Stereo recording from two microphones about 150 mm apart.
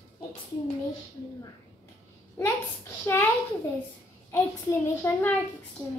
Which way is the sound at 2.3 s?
15° left (ahead or behind).